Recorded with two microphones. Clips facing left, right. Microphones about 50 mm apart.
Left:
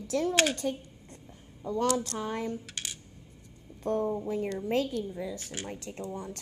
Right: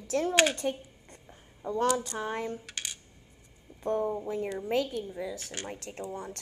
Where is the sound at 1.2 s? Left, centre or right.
Right.